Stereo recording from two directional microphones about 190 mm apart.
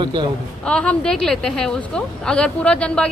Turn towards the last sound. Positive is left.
turn(degrees=5)  # may be behind; listen again after turning